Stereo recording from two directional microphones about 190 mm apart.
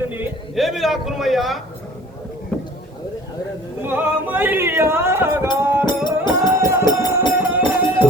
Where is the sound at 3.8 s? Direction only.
10° right (ahead or behind).